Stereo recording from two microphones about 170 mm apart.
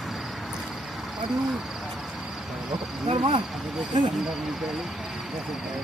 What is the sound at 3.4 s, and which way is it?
Speech, centre (ahead or behind).